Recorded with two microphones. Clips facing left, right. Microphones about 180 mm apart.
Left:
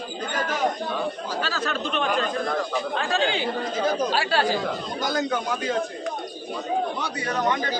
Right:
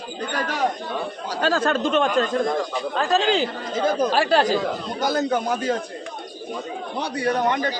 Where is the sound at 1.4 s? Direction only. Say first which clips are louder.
Right 10 dB; 50° right (ahead or behind).